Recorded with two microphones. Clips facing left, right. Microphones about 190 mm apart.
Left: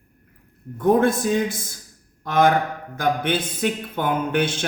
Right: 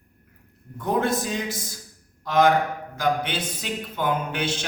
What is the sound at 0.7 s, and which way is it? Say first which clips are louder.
Speech: left 6 dB; 50° left (ahead or behind).